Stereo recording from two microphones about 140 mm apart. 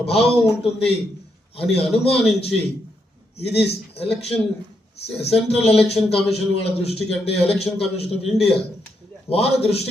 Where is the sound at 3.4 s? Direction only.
45° left (ahead or behind).